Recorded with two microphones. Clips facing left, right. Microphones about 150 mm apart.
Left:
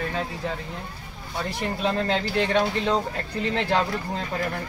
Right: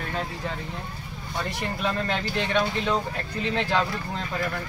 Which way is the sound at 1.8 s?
30° left (ahead or behind).